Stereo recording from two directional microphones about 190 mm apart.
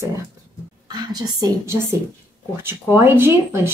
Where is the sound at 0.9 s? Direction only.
20° right (ahead or behind).